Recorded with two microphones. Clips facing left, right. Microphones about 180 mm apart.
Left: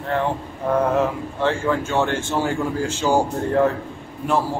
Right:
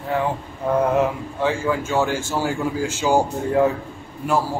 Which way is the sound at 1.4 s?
10° right (ahead or behind).